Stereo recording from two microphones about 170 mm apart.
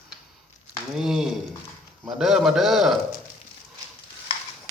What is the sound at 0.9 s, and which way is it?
Speech, centre (ahead or behind).